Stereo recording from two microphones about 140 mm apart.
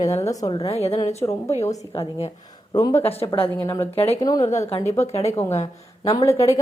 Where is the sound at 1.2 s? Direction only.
25° left (ahead or behind).